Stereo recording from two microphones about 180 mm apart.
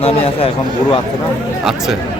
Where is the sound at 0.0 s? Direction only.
30° left (ahead or behind).